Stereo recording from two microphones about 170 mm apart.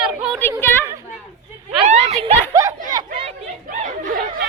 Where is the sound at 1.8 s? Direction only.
40° right (ahead or behind).